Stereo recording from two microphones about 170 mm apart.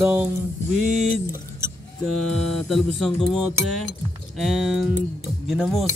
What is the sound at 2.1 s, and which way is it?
Speech, 5° left (ahead or behind).